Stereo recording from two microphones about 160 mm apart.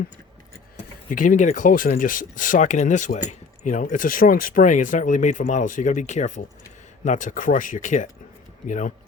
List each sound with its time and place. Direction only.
1.1 s speech: 55° left (ahead or behind)